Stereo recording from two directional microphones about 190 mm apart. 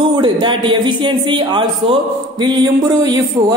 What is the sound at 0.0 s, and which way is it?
A woman's voice, 25° right (ahead or behind).